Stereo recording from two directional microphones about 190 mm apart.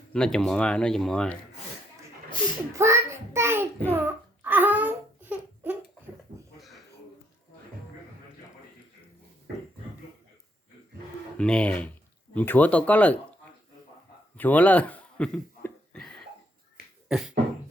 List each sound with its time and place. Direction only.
0.1 s speech: 5° left (ahead or behind)
2.7 s a child's voice: 15° right (ahead or behind)
3.9 s babbling: 10° right (ahead or behind)
6.6 s a sound: centre (ahead or behind)
11.3 s speech: 5° left (ahead or behind)
14.3 s a sound: 10° left (ahead or behind)
17.1 s beatboxing: 5° right (ahead or behind)